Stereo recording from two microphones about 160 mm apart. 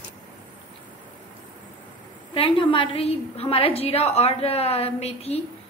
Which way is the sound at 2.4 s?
35° left (ahead or behind).